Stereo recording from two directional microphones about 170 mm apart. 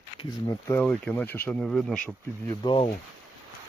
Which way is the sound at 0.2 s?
20° left (ahead or behind).